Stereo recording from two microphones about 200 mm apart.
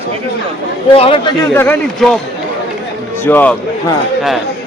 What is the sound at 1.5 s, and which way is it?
Speech, 10° left (ahead or behind).